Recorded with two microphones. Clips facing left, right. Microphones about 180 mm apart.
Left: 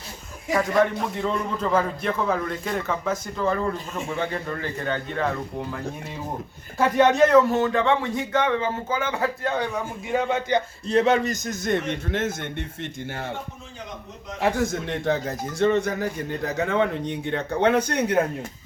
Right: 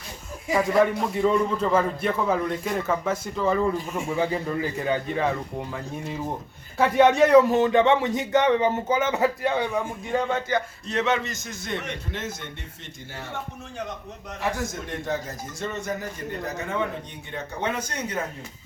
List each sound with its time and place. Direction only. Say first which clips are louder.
0.6 s a man's voice: right 1 dB; 5° right (ahead or behind); by 9.5 s 20° right (ahead or behind)
10.1 s a man's voice: left 3 dB; 10° left (ahead or behind)
10.8 s a man's voice: left 8 dB; 30° left (ahead or behind); by 13.3 s 60° left (ahead or behind)
14.4 s speech: left 6 dB; 60° left (ahead or behind)